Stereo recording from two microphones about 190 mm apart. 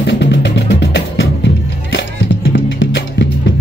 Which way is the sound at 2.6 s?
75° left (ahead or behind).